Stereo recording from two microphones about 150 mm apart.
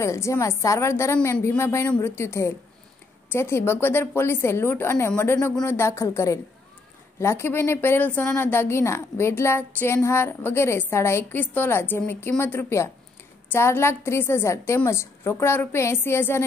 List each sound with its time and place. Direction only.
0.0 s a woman's voice: 20° left (ahead or behind)